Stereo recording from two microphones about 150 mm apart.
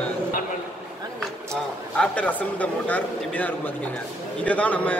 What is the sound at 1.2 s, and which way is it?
Speech, 5° left (ahead or behind).